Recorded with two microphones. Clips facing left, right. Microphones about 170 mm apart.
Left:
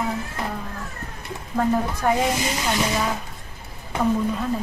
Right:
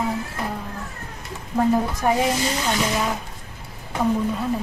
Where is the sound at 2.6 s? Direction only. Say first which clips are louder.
Left 2 dB; centre (ahead or behind).